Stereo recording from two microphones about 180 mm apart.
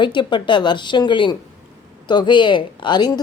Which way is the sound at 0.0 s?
25° left (ahead or behind).